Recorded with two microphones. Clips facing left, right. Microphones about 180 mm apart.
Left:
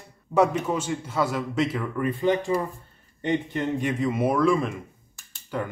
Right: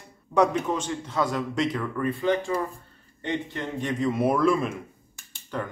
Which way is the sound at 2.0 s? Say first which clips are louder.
Left 2 dB; 15° left (ahead or behind).